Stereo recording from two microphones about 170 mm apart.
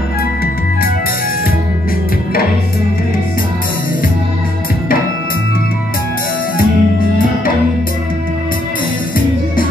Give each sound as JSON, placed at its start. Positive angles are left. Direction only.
{"t": 6.6, "sound": "music", "side_deg": 55}